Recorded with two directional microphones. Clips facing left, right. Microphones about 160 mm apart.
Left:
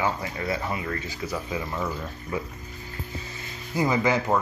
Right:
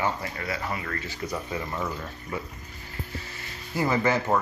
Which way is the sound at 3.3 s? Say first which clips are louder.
Left 2 dB; 15° left (ahead or behind).